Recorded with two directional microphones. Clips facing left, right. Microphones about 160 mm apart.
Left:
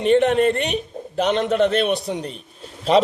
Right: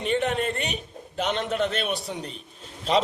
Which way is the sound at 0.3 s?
50° left (ahead or behind).